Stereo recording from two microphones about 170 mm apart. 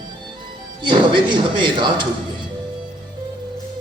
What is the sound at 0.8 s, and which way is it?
Speech, 30° right (ahead or behind).